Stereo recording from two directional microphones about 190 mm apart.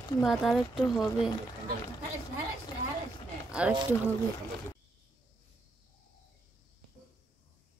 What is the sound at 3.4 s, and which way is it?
Speech, 5° right (ahead or behind).